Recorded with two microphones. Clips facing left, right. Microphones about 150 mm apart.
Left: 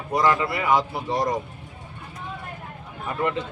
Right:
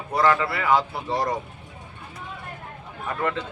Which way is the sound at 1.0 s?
Centre (ahead or behind).